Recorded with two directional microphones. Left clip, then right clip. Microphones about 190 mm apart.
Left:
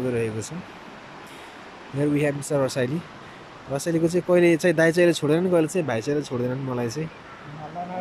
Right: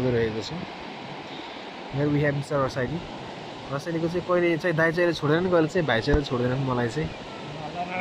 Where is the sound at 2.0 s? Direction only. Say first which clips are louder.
Left 2 dB; 15° left (ahead or behind).